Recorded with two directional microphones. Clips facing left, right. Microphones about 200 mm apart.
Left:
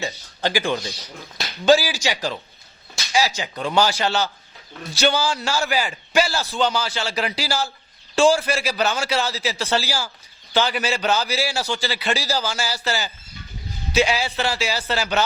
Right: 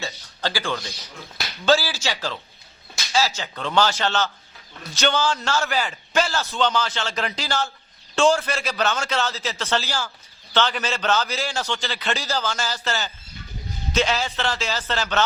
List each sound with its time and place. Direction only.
0.0 s music: 15° left (ahead or behind)
1.6 s a man's voice: 15° left (ahead or behind)